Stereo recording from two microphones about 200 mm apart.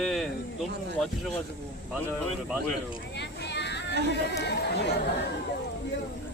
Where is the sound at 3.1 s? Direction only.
55° left (ahead or behind).